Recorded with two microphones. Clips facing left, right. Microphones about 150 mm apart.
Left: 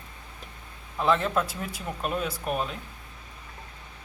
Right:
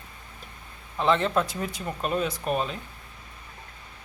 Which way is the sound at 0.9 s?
5° left (ahead or behind).